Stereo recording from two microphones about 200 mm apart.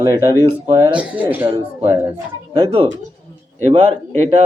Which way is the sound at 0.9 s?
5° right (ahead or behind).